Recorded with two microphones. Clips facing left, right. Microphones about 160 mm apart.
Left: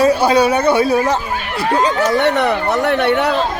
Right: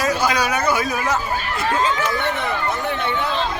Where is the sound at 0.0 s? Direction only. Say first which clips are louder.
Left 8 dB; 30° left (ahead or behind).